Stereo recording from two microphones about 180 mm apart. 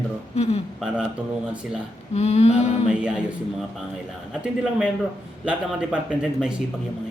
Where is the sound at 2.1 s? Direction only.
35° left (ahead or behind).